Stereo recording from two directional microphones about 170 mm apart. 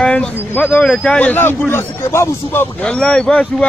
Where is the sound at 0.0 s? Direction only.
5° left (ahead or behind).